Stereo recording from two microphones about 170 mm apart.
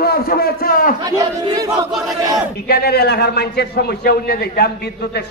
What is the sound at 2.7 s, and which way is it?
A man's voice, 70° left (ahead or behind).